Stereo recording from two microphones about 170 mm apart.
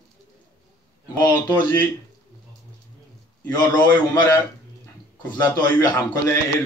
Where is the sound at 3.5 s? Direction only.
25° left (ahead or behind).